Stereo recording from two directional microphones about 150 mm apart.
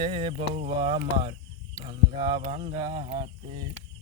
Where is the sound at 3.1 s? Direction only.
25° right (ahead or behind).